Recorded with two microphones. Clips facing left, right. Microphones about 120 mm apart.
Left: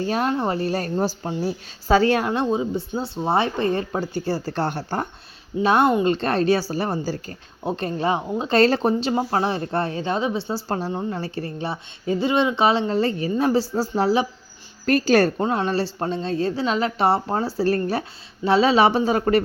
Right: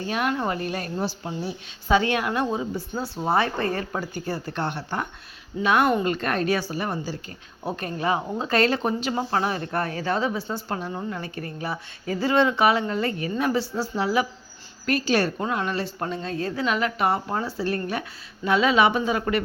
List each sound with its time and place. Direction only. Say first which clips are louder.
0.0 s a woman's voice: left 3 dB; 35° left (ahead or behind)
5.6 s a woman's voice: left 3 dB; 30° left (ahead or behind)
7.8 s a woman's voice: left 2 dB; 30° left (ahead or behind)
15.4 s a woman's voice: left 4 dB; 30° left (ahead or behind)